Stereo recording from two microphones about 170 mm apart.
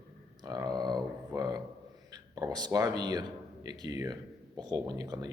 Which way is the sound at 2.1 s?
25° right (ahead or behind).